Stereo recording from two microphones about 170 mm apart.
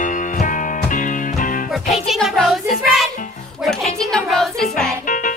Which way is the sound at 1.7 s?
Centre (ahead or behind).